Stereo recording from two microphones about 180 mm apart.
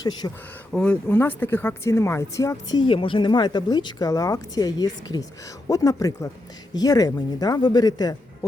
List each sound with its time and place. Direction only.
0.0 s speech: 20° left (ahead or behind)
0.7 s speech: 5° left (ahead or behind); by 8.4 s 20° left (ahead or behind)